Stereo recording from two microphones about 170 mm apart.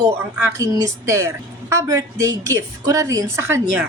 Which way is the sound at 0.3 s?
20° right (ahead or behind).